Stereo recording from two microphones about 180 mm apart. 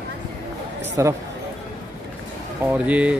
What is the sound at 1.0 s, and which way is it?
Speech, 15° right (ahead or behind).